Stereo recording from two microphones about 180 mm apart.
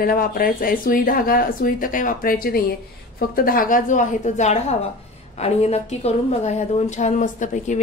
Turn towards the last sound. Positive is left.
turn(degrees=45)  # may be behind; listen again after turning